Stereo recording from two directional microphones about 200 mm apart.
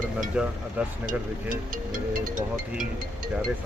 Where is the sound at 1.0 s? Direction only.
45° right (ahead or behind).